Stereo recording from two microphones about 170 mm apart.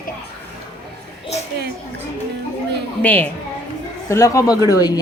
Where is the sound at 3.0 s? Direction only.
10° left (ahead or behind).